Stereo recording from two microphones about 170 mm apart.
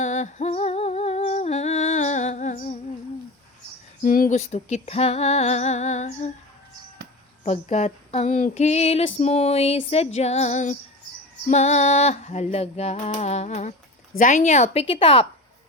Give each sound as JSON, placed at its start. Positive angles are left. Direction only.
{"t": 0.0, "sound": "humming", "side_deg": 45}
{"t": 4.0, "sound": "female singing", "side_deg": 55}
{"t": 7.4, "sound": "female singing", "side_deg": 45}